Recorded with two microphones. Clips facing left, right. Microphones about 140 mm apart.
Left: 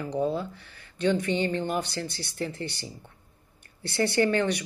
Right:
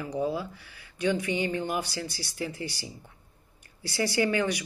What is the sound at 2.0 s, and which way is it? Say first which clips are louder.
Speech: left 2 dB; 55° left (ahead or behind).